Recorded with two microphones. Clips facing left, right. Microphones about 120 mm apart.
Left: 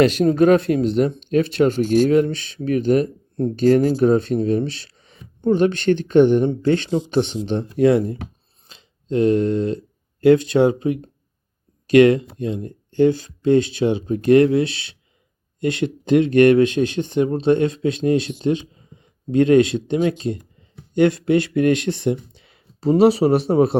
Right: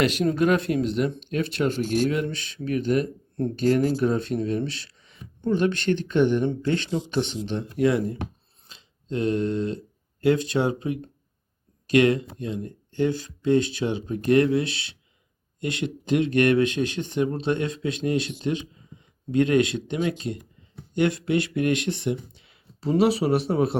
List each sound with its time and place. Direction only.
0.0 s speech: 35° left (ahead or behind)
8.7 s a sound: 30° left (ahead or behind)
10.6 s speech: 30° left (ahead or behind)
11.9 s speech: 30° left (ahead or behind)